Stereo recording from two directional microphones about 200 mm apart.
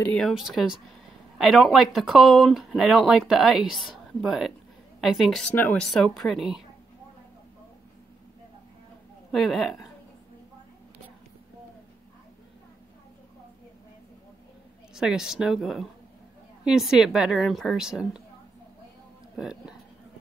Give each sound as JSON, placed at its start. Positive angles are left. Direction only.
{"t": 0.0, "sound": "speech", "side_deg": 5}
{"t": 9.3, "sound": "speech", "side_deg": 0}
{"t": 15.0, "sound": "speech", "side_deg": -5}
{"t": 19.3, "sound": "speech", "side_deg": -5}